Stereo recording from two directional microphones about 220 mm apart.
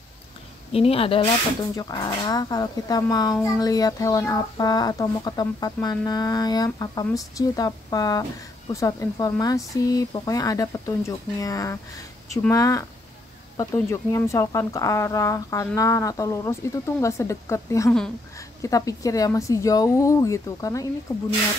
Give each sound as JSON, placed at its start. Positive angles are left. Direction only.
{"t": 0.7, "sound": "a woman's voice", "side_deg": 25}